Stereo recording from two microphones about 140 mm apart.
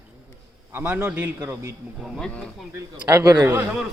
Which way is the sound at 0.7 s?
15° right (ahead or behind).